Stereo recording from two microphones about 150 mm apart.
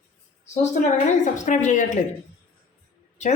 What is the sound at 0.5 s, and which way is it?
A woman's voice, 50° left (ahead or behind).